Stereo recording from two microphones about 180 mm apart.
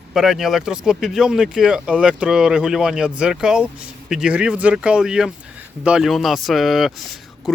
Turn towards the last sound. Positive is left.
turn(degrees=0)  # may be behind; listen again after turning